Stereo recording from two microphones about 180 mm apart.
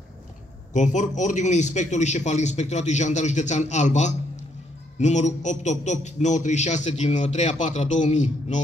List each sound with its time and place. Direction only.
0.7 s a man's voice: 40° left (ahead or behind)